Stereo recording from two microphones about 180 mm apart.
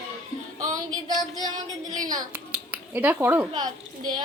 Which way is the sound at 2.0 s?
20° right (ahead or behind).